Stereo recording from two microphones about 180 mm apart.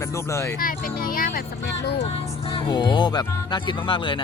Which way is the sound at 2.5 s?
25° left (ahead or behind).